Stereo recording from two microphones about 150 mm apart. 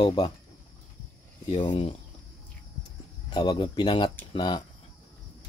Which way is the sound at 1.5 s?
35° left (ahead or behind).